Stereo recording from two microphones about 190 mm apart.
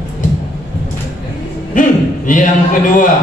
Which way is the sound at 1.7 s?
45° left (ahead or behind).